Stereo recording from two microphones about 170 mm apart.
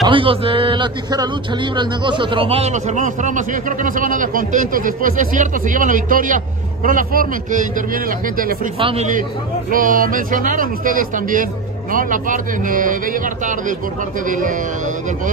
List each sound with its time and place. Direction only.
0.0 s a man's voice: 30° right (ahead or behind); by 8.5 s 55° right (ahead or behind)
8.7 s a man's voice: 35° right (ahead or behind)
9.7 s a man's voice: 55° right (ahead or behind)